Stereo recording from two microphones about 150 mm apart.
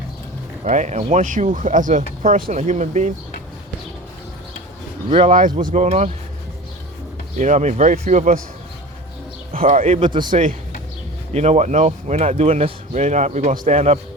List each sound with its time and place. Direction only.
0.6 s speech: 50° right (ahead or behind)
5.0 s speech: 40° right (ahead or behind)
5.5 s speech: 55° right (ahead or behind)
7.3 s speech: 50° right (ahead or behind)
9.5 s speech: 40° right (ahead or behind)
10.0 s speech: 30° right (ahead or behind)
11.3 s speech: 50° right (ahead or behind)
12.9 s speech: 50° right (ahead or behind)